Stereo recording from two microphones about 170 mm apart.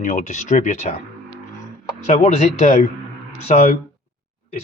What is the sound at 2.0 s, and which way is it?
Speech, 40° left (ahead or behind).